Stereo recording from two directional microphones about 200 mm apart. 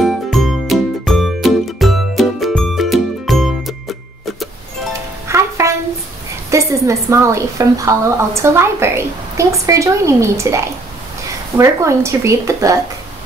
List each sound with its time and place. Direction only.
0.0 s music: centre (ahead or behind)
5.3 s music: 15° right (ahead or behind)
6.5 s a woman's voice: 15° right (ahead or behind)